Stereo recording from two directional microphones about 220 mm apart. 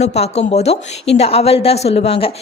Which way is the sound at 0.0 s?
30° left (ahead or behind).